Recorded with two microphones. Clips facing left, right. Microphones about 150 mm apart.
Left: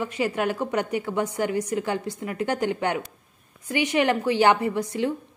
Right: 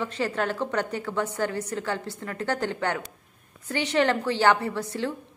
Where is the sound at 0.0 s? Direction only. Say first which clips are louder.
Left 2 dB; 10° left (ahead or behind).